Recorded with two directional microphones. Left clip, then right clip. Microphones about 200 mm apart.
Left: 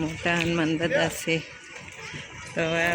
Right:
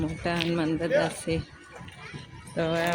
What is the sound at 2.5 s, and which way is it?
Speech, 5° right (ahead or behind).